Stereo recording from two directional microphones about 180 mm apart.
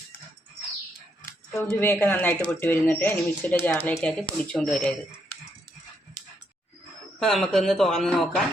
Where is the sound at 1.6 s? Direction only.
10° left (ahead or behind).